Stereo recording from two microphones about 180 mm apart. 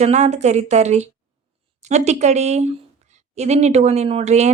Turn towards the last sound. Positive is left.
turn(degrees=-40)  # may be behind; listen again after turning